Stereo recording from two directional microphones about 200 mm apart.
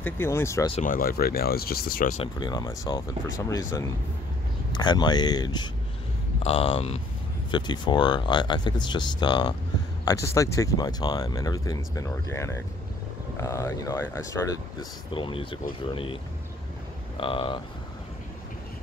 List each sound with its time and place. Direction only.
0.0 s speech: 10° left (ahead or behind)
0.8 s speech: 45° left (ahead or behind)
2.1 s speech: 20° left (ahead or behind)
17.2 s speech: 25° left (ahead or behind)